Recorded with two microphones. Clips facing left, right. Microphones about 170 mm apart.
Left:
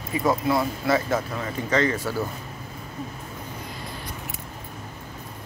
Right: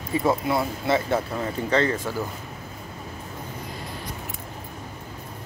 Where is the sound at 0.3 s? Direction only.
25° right (ahead or behind).